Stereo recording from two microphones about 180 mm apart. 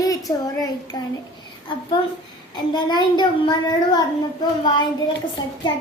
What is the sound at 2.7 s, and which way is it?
A child's voice, 25° left (ahead or behind).